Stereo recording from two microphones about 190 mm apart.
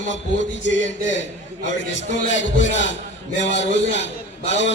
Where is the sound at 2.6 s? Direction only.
40° left (ahead or behind).